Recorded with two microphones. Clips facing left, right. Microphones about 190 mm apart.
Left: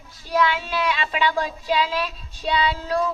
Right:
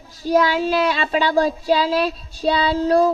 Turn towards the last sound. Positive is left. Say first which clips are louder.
# right 7 dB
turn(degrees=-40)  # may be behind; listen again after turning